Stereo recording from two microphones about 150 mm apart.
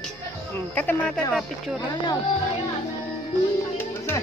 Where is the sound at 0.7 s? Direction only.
10° left (ahead or behind).